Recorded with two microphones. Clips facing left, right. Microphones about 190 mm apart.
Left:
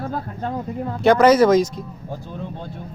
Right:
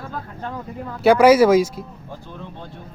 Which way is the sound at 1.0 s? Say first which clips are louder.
Right 1 dB; 10° right (ahead or behind).